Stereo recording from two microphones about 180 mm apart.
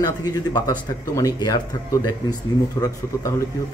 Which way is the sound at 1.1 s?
20° left (ahead or behind).